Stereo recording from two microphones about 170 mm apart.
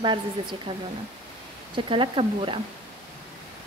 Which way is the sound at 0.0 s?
30° right (ahead or behind).